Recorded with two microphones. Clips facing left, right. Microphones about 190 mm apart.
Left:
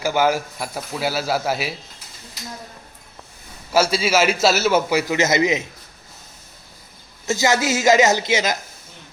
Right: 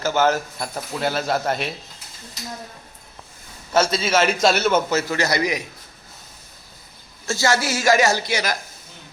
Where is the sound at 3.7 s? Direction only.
10° left (ahead or behind).